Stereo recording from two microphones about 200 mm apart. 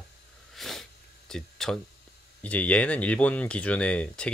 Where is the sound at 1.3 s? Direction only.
Centre (ahead or behind).